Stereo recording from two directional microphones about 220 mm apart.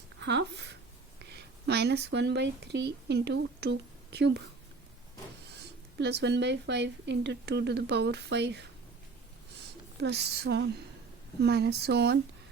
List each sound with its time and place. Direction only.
0.2 s speech: 50° right (ahead or behind)
6.0 s speech: 50° right (ahead or behind)
10.0 s speech: 50° right (ahead or behind)